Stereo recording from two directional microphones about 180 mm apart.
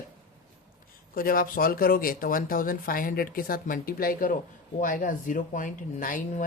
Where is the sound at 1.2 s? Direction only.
50° left (ahead or behind).